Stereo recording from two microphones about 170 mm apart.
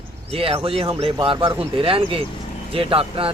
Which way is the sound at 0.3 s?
35° right (ahead or behind).